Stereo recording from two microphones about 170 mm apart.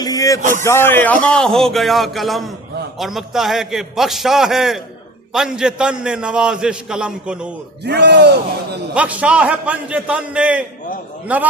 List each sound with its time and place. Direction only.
0.0 s a sound: 20° left (ahead or behind)
0.6 s a man's voice: 15° left (ahead or behind); by 7.5 s 5° right (ahead or behind)
7.9 s speech: 80° right
9.0 s a man's voice: 5° right (ahead or behind)